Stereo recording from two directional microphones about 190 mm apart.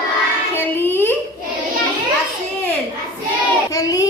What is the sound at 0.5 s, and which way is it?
Child singing, 10° left (ahead or behind).